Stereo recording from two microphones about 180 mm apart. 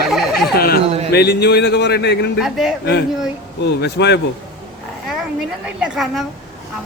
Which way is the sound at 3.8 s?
70° left (ahead or behind).